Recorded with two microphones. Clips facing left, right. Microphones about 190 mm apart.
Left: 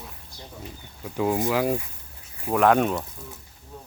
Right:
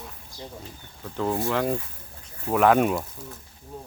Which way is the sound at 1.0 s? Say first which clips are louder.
Left 2 dB; 10° left (ahead or behind).